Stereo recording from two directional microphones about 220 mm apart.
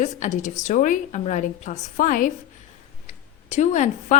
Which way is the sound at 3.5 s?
30° left (ahead or behind).